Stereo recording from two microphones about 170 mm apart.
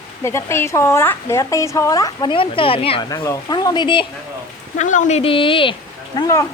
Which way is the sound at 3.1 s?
20° left (ahead or behind).